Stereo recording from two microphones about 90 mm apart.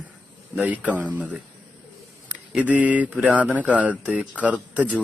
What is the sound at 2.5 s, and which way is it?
Speech, 15° right (ahead or behind).